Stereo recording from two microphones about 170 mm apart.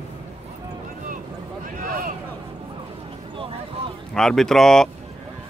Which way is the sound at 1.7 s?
55° right (ahead or behind).